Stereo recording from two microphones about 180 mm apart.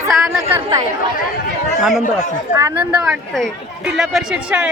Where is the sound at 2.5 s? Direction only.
15° right (ahead or behind).